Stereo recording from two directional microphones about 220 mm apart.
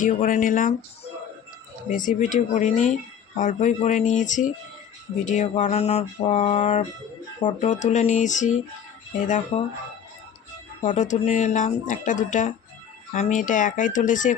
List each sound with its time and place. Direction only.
0.0 s speech: 35° left (ahead or behind)
1.9 s speech: 35° left (ahead or behind)
10.8 s speech: 35° left (ahead or behind)